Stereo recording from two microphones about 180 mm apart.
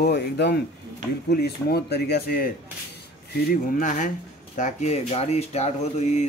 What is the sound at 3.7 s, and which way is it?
Speech, 45° left (ahead or behind).